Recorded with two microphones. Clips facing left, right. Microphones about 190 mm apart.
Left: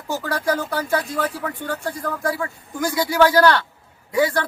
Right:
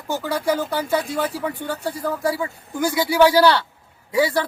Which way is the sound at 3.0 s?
10° right (ahead or behind).